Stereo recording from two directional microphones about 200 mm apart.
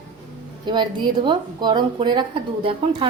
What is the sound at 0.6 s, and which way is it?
A woman's voice, 20° right (ahead or behind).